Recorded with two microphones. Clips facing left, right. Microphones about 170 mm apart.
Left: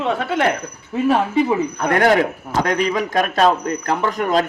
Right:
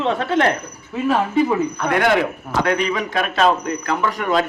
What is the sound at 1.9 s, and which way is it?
A man's voice, 45° left (ahead or behind).